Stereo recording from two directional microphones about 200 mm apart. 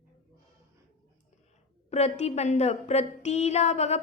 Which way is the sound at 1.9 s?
35° left (ahead or behind).